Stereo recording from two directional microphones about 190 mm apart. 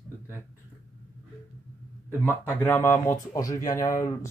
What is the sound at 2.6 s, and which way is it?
Speech, 10° left (ahead or behind).